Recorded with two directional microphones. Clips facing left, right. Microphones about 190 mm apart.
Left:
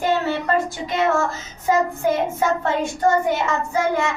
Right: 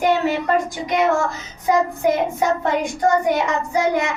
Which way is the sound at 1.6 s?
15° right (ahead or behind).